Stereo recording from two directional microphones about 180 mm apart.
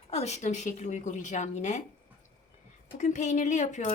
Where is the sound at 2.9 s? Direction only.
40° left (ahead or behind).